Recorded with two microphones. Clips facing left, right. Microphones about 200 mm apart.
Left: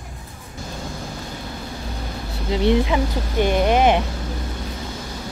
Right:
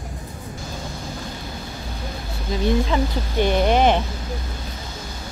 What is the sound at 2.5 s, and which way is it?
Speech, 75° left (ahead or behind).